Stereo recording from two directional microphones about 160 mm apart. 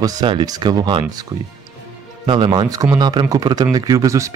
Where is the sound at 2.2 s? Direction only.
30° right (ahead or behind).